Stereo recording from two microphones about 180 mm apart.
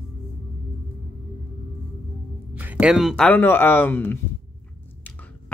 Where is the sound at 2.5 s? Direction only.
10° right (ahead or behind).